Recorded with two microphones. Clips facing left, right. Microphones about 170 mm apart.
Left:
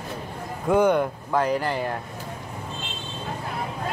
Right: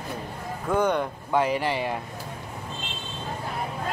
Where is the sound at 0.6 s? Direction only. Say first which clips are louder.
Left 4 dB; 10° left (ahead or behind).